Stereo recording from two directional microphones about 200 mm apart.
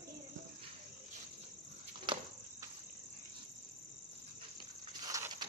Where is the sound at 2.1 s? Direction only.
25° right (ahead or behind).